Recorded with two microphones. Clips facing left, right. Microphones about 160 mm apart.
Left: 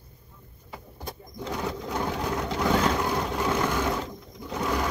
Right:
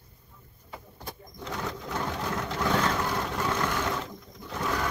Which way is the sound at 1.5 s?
10° left (ahead or behind).